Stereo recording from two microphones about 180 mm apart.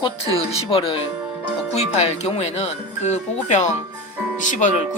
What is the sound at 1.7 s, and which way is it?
Speech, 35° left (ahead or behind).